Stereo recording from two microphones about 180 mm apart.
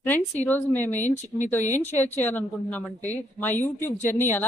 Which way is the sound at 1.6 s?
40° left (ahead or behind).